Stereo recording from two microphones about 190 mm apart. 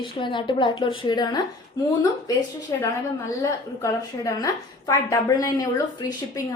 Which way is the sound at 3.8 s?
20° left (ahead or behind).